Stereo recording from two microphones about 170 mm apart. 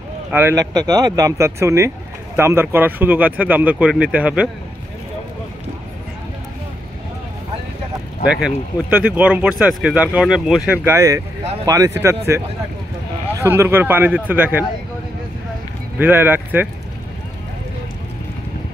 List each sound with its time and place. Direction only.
0.3 s speech: 15° right (ahead or behind)
8.3 s speech: 5° right (ahead or behind)
13.4 s speech: 15° right (ahead or behind)
16.0 s speech: 10° right (ahead or behind)